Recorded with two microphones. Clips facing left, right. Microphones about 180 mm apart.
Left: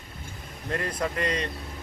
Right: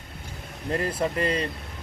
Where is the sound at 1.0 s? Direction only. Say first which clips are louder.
Right 2 dB; 30° right (ahead or behind).